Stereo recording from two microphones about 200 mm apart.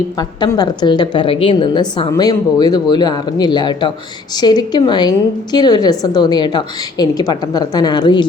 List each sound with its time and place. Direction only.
0.2 s a woman's voice: 20° left (ahead or behind)